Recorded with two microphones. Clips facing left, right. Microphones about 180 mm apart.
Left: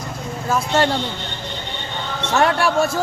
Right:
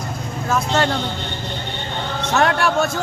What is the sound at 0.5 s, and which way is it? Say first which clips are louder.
Speech: left 1 dB; 10° left (ahead or behind).